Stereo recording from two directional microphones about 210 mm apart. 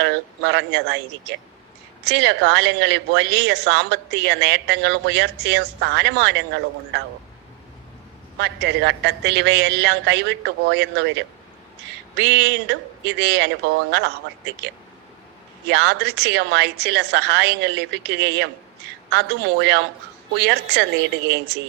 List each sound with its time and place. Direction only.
0.0 s speech: 55° right (ahead or behind)
8.4 s a woman's voice: 55° right (ahead or behind)
15.7 s a woman's voice: 50° right (ahead or behind)